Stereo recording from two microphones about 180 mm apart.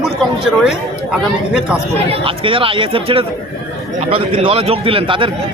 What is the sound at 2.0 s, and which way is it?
A man's voice, 30° right (ahead or behind).